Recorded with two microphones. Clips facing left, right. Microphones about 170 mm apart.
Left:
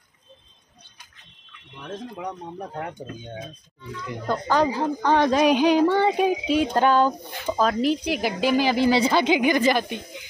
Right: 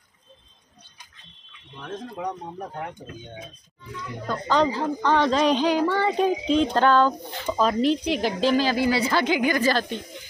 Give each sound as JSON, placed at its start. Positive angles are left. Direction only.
{"t": 4.3, "sound": "a woman's voice", "side_deg": 10}